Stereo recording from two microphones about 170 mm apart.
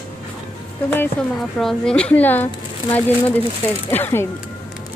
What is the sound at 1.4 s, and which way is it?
Speech, centre (ahead or behind).